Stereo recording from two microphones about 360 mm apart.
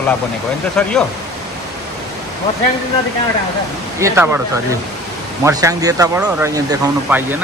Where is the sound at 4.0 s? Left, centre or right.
Centre.